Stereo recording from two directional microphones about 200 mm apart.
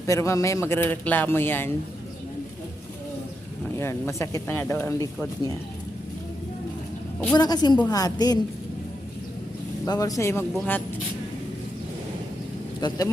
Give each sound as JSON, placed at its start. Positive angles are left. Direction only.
{"t": 0.0, "sound": "speech", "side_deg": 15}
{"t": 3.8, "sound": "speech", "side_deg": 15}
{"t": 7.3, "sound": "a woman's voice", "side_deg": 20}
{"t": 9.8, "sound": "speech", "side_deg": 15}
{"t": 12.8, "sound": "a woman's voice", "side_deg": 20}